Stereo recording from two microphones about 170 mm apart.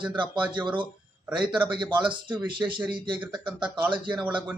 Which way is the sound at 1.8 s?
25° right (ahead or behind).